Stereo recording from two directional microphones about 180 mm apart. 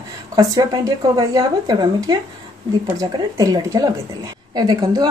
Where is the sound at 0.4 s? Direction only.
20° right (ahead or behind).